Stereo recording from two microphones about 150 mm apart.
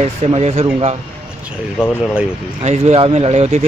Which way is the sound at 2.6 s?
45° right (ahead or behind).